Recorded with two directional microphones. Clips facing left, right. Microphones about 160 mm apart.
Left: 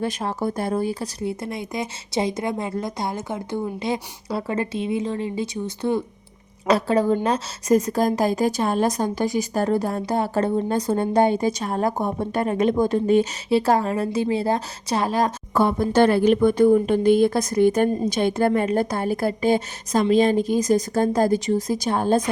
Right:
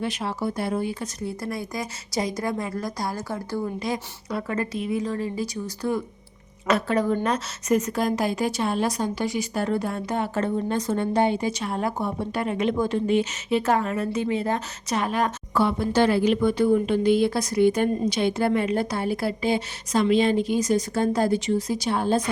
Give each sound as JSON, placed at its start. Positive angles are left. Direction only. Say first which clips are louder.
{"t": 0.0, "sound": "speech", "louder": "left 3 dB", "side_deg": 45}
{"t": 1.2, "sound": "a woman's voice", "louder": "left 1 dB", "side_deg": 25}